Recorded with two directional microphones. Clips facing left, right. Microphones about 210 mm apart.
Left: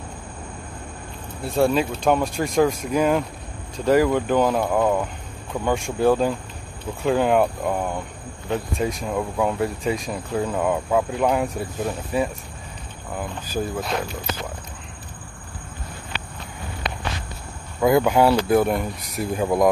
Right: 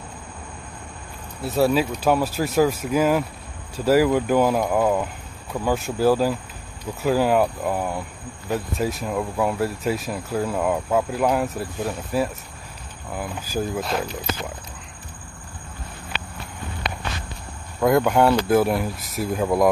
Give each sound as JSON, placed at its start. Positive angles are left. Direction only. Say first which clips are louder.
{"t": 1.4, "sound": "speech", "louder": "even", "side_deg": -5}
{"t": 17.7, "sound": "speech", "louder": "left 1 dB", "side_deg": 0}